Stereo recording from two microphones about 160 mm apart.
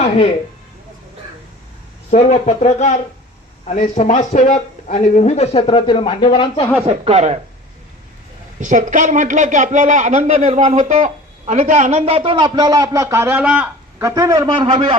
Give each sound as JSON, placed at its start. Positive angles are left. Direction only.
{"t": 2.0, "sound": "speech", "side_deg": 45}
{"t": 6.8, "sound": "speech", "side_deg": -40}
{"t": 8.6, "sound": "speech", "side_deg": -50}
{"t": 14.0, "sound": "a man's voice", "side_deg": -20}